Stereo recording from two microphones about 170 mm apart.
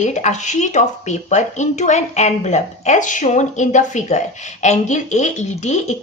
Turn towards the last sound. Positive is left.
turn(degrees=45)  # may be behind; listen again after turning